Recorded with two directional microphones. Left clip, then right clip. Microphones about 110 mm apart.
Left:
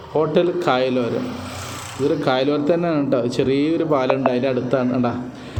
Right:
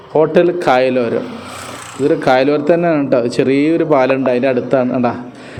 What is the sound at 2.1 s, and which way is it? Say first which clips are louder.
A man's voice: right 7 dB; 55° right (ahead or behind).